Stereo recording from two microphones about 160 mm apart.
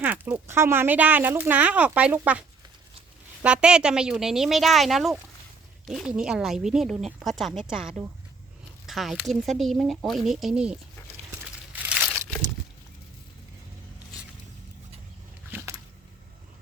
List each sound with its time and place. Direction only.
0.0 s speech: 10° right (ahead or behind)
3.4 s speech: 5° right (ahead or behind)
11.7 s crumpling: 10° right (ahead or behind)
15.5 s a sound: 20° right (ahead or behind)